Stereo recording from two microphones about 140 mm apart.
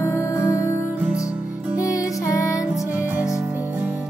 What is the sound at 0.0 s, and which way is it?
Music, 20° left (ahead or behind).